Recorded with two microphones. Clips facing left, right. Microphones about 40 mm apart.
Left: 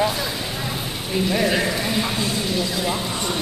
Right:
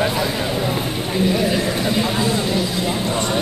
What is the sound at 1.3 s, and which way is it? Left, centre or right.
Speech, centre.